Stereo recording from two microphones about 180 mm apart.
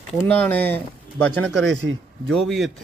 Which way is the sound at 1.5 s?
80° right.